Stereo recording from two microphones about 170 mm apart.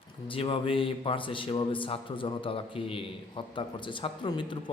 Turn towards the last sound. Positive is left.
turn(degrees=30)  # may be behind; listen again after turning